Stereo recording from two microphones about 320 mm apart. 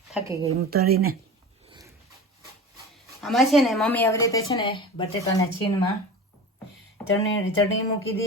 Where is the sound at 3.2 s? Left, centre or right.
Centre.